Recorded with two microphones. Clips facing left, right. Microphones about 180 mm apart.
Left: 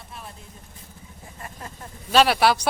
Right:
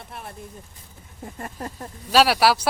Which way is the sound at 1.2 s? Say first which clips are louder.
Right 7 dB; 50° right (ahead or behind).